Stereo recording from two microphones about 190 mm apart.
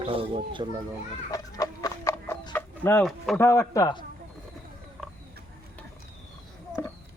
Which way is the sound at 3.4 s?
15° left (ahead or behind).